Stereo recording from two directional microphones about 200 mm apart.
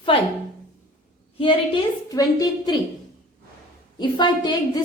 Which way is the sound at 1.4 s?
25° left (ahead or behind).